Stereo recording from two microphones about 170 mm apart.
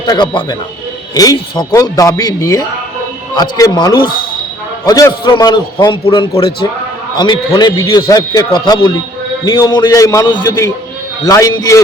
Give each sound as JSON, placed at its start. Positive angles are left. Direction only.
{"t": 0.0, "sound": "a man's voice", "side_deg": 25}